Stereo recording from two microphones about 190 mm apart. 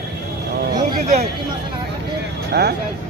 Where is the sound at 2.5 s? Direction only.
60° right (ahead or behind).